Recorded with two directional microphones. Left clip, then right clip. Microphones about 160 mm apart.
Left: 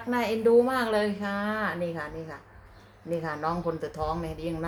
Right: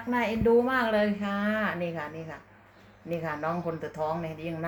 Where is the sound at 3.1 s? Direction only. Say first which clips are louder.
Left 1 dB; centre (ahead or behind).